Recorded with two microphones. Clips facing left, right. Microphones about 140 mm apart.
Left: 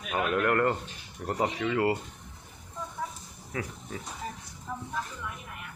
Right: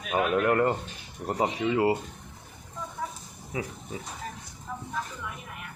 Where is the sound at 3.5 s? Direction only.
15° right (ahead or behind).